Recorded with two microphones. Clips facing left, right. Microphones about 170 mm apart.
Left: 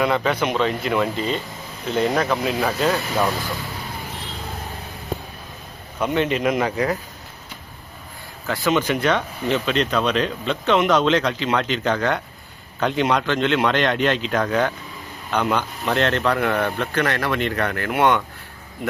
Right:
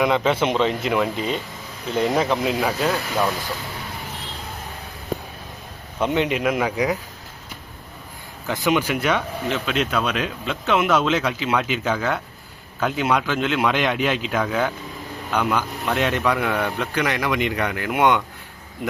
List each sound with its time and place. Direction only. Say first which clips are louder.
0.0 s a man's voice: right 1 dB; 15° right (ahead or behind)
0.9 s speech: even; 5° right (ahead or behind)
2.1 s a man's voice: right 1 dB; 20° right (ahead or behind)
2.6 s speech: left 1 dB; 5° right (ahead or behind)
6.0 s speech: even; 20° right (ahead or behind)
8.4 s speech: left 1 dB; 15° right (ahead or behind)